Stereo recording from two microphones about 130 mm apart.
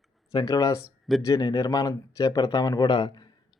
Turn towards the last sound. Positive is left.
turn(degrees=35)  # may be behind; listen again after turning